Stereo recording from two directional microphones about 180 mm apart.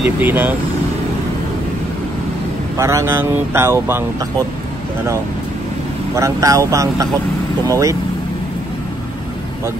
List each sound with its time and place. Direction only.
0.2 s speech: 10° right (ahead or behind)
2.8 s speech: 15° right (ahead or behind)
6.1 s speech: 15° right (ahead or behind)